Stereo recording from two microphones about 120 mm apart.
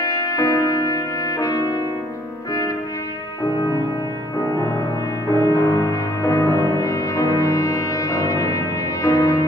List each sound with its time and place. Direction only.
0.0 s brass instrument: 30° left (ahead or behind)
5.3 s music: 25° left (ahead or behind)